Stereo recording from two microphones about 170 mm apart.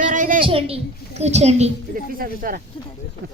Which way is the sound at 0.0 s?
50° right (ahead or behind).